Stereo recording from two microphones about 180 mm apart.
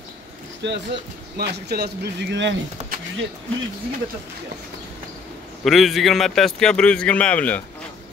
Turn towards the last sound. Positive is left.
turn(degrees=10)  # may be behind; listen again after turning